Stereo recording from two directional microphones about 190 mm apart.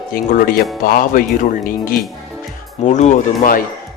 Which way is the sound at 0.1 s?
50° left (ahead or behind).